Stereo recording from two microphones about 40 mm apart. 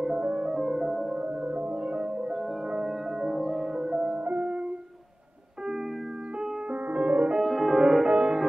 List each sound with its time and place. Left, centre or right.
0.2 s music: right
0.5 s music: centre
1.1 s music: right
2.7 s music: centre
3.6 s music: centre
4.1 s music: right
6.7 s music: right
7.3 s music: centre
7.8 s music: centre